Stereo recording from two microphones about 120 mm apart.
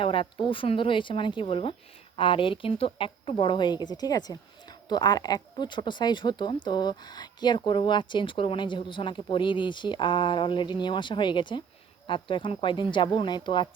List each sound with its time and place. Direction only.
0.0 s a woman's voice: 45° left (ahead or behind)